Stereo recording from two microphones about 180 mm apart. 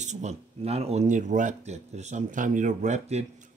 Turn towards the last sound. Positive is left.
turn(degrees=-40)  # may be behind; listen again after turning